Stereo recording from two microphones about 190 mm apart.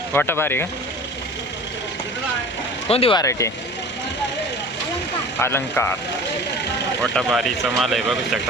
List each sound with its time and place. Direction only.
0.1 s speech: 10° left (ahead or behind)
2.9 s speech: 30° left (ahead or behind)
5.4 s speech: 10° left (ahead or behind)
7.0 s speech: centre (ahead or behind)